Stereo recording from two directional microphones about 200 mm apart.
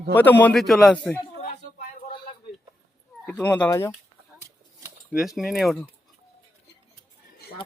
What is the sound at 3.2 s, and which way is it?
Speech, 5° left (ahead or behind).